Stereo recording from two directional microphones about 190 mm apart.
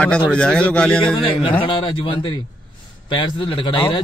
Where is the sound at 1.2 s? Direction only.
25° left (ahead or behind).